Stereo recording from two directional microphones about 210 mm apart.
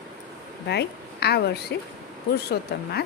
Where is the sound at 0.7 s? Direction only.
50° left (ahead or behind).